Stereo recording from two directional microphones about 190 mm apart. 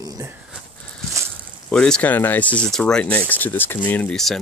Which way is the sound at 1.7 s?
5° left (ahead or behind).